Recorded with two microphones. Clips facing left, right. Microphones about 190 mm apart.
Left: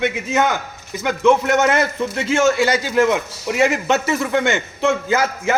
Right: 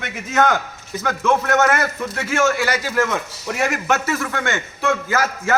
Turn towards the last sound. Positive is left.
turn(degrees=20)  # may be behind; listen again after turning